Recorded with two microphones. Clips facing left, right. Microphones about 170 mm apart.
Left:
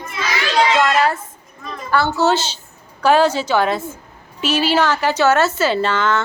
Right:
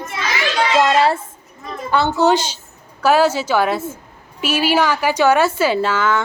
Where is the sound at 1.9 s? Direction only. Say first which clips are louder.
Right 1 dB; 20° right (ahead or behind).